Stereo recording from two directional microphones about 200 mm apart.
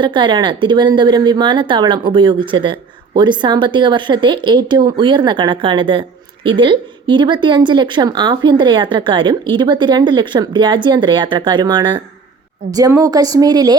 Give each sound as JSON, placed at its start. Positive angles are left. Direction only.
{"t": 0.0, "sound": "speech", "side_deg": -25}